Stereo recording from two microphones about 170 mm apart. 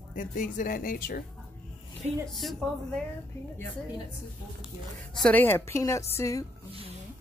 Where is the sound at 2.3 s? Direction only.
Centre (ahead or behind).